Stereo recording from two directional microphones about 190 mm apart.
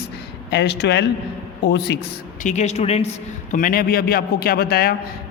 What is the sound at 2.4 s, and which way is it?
Speech, 40° left (ahead or behind).